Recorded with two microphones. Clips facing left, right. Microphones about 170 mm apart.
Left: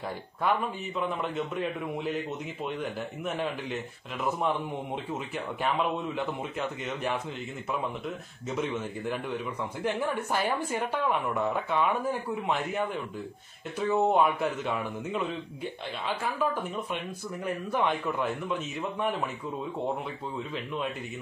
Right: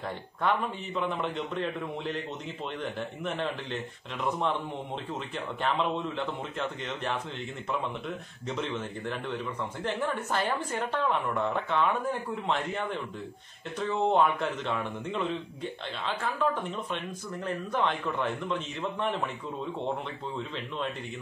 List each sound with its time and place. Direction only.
0.4 s a man's voice: centre (ahead or behind)
5.6 s speech: 10° left (ahead or behind)
8.5 s speech: 10° left (ahead or behind)
17.5 s speech: 10° left (ahead or behind)
20.5 s speech: 5° left (ahead or behind)